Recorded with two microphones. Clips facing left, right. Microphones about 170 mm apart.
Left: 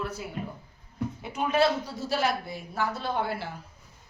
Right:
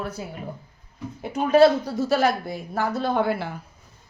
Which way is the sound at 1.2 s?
40° right (ahead or behind).